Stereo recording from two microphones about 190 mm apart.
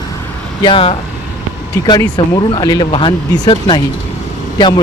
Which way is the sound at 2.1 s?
20° left (ahead or behind).